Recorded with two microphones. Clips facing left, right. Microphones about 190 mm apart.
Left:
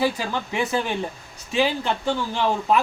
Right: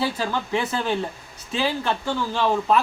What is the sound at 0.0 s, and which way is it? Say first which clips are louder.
Speech: left 1 dB; 15° left (ahead or behind).